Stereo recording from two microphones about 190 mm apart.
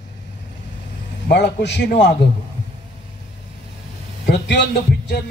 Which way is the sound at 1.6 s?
65° left (ahead or behind).